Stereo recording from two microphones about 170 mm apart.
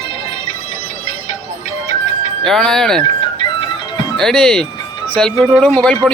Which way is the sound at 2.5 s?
5° left (ahead or behind).